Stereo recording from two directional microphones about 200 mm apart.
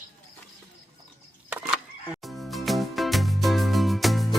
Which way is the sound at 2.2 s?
Centre (ahead or behind).